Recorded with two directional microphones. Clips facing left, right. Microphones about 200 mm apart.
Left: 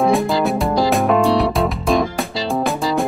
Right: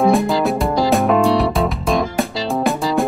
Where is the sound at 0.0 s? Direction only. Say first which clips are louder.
Right 1 dB; centre (ahead or behind).